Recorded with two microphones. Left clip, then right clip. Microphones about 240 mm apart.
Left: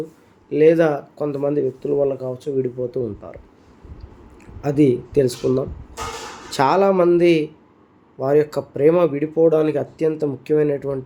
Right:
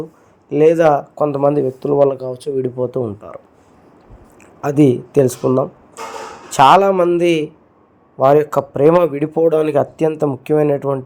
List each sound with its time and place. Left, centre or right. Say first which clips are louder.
0.5 s speech: right 4 dB; centre
4.6 s speech: right 4 dB; centre
6.5 s speech: right 7 dB; centre